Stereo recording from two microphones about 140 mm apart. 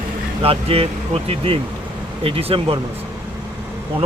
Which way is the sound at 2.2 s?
45° right (ahead or behind).